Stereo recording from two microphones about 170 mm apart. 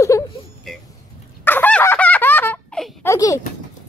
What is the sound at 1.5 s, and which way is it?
Fowl, 10° left (ahead or behind).